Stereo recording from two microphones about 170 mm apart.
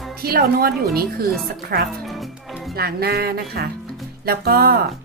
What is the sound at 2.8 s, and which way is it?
Speech, 65° right (ahead or behind).